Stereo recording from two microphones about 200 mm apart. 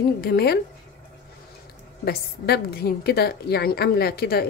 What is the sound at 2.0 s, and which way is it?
A woman's voice, 50° left (ahead or behind).